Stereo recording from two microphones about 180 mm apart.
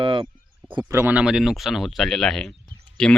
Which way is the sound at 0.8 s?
10° right (ahead or behind).